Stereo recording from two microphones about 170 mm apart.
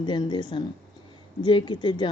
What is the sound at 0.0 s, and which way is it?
A woman's voice, 25° left (ahead or behind).